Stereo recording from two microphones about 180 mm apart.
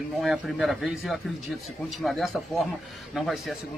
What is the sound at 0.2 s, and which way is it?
A man's voice, centre (ahead or behind).